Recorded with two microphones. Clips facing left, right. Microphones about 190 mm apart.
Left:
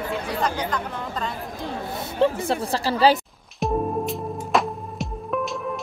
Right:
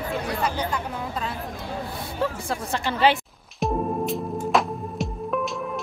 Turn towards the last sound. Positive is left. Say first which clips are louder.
# right 1 dB
turn(degrees=0)  # may be behind; listen again after turning